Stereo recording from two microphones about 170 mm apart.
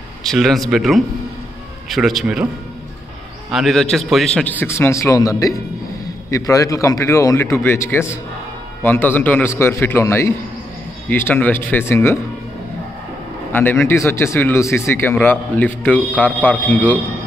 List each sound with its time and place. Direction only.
0.2 s speech: centre (ahead or behind)
3.5 s speech: centre (ahead or behind)
13.5 s speech: 10° left (ahead or behind)